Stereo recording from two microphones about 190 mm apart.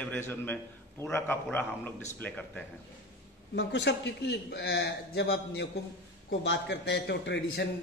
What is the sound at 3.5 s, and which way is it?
A man's voice, 65° left (ahead or behind).